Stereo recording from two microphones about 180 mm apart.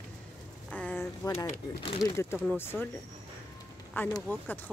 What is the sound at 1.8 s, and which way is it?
Speech, 30° left (ahead or behind).